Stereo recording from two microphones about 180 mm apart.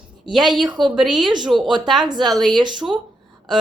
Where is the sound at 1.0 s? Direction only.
Centre (ahead or behind).